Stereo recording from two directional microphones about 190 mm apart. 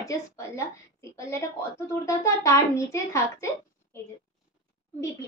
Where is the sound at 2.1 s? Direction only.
15° left (ahead or behind).